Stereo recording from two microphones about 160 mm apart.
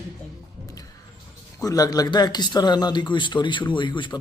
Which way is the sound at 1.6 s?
20° left (ahead or behind).